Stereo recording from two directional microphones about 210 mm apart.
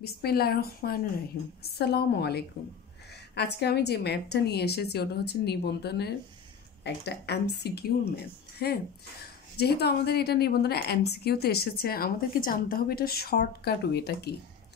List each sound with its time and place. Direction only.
0.0 s a woman's voice: 50° left (ahead or behind)